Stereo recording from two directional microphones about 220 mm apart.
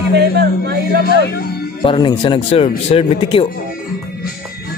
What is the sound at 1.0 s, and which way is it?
Speech, 45° left (ahead or behind).